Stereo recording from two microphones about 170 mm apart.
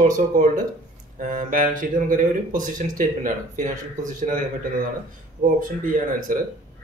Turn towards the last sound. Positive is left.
turn(degrees=-50)  # may be behind; listen again after turning